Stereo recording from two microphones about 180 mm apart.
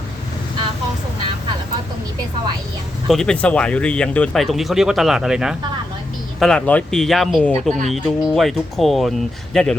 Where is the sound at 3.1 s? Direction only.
5° left (ahead or behind).